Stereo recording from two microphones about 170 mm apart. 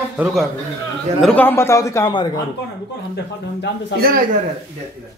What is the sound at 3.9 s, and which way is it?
Speech, 60° right (ahead or behind).